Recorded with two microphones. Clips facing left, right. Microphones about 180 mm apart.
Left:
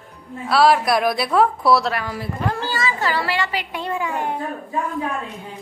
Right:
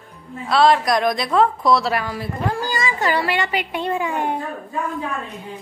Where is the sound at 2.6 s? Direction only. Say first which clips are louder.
Right 1 dB; 15° right (ahead or behind).